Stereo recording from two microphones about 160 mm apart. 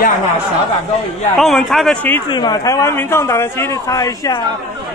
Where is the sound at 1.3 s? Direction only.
Centre (ahead or behind).